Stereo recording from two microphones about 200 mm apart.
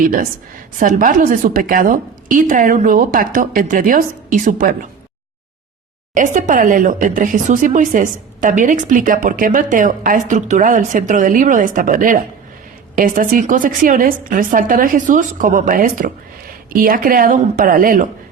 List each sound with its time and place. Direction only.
0.0 s a woman's voice: 45° right (ahead or behind)
6.1 s a woman's voice: 40° right (ahead or behind)